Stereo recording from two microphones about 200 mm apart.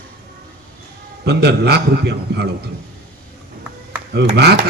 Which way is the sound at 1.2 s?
55° right (ahead or behind).